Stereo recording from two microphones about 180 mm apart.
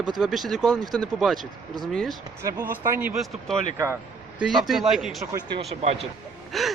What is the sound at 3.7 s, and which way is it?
Speech, 15° right (ahead or behind).